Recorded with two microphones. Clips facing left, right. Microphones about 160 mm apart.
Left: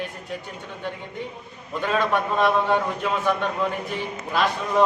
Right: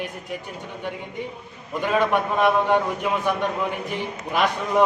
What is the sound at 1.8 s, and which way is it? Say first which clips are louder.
A man's voice: right 2 dB; 15° right (ahead or behind).